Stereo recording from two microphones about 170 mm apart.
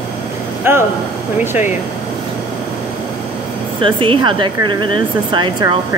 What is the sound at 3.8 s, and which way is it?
Speech, 30° right (ahead or behind).